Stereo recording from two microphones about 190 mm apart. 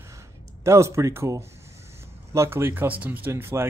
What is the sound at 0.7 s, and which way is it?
Speech, 15° right (ahead or behind).